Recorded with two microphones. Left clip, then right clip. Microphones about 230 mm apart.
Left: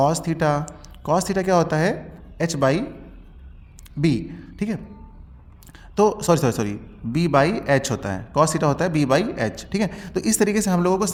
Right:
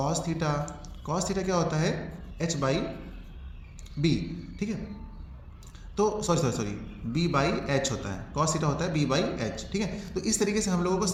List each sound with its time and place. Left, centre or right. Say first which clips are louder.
0.0 s a man's voice: left 10 dB; left
6.0 s a man's voice: left 8 dB; left